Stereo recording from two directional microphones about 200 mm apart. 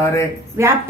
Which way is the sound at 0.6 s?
15° right (ahead or behind).